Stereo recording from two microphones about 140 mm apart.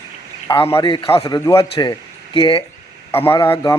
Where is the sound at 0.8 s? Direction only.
30° left (ahead or behind).